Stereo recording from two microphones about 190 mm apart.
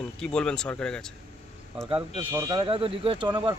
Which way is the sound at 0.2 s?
5° left (ahead or behind).